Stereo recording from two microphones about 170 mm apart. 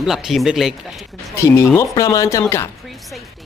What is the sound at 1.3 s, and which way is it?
Speech, 15° left (ahead or behind).